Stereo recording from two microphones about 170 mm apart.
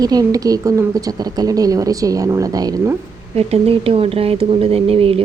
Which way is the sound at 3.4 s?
35° right (ahead or behind).